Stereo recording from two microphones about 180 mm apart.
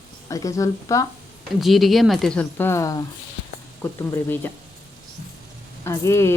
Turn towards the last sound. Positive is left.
turn(degrees=15)  # may be behind; listen again after turning